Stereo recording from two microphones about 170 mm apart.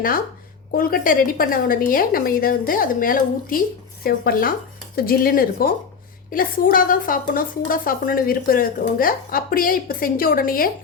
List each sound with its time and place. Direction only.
0.8 s a woman's voice: 60° left (ahead or behind)